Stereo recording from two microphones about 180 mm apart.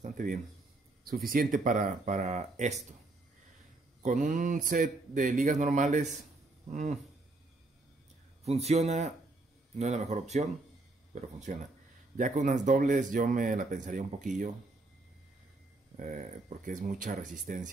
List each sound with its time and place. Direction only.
0.0 s a sound: 50° right (ahead or behind)
1.0 s speech: 55° right (ahead or behind)
4.0 s speech: 45° right (ahead or behind)
8.5 s speech: 35° right (ahead or behind)
16.0 s speech: 45° right (ahead or behind)